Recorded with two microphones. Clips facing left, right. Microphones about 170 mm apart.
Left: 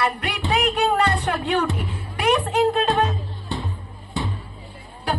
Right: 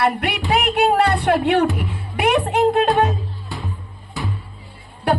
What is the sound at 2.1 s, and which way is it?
Music, 60° right (ahead or behind).